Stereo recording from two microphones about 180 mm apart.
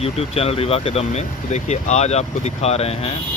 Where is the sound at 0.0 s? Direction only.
35° left (ahead or behind).